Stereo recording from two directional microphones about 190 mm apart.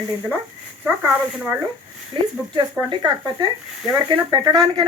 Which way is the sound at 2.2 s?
25° right (ahead or behind).